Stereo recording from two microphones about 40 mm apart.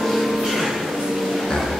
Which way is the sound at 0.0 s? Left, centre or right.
Centre.